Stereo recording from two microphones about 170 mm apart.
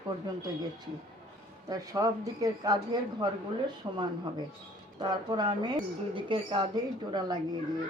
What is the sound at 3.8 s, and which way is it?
Speech, 20° right (ahead or behind).